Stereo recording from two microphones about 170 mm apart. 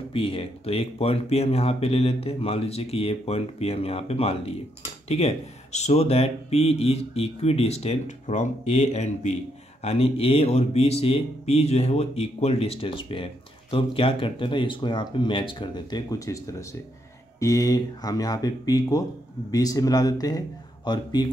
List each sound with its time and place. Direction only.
0.1 s speech: 30° left (ahead or behind)